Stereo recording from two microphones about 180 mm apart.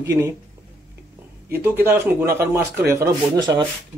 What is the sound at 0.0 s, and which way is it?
Speech, 15° right (ahead or behind).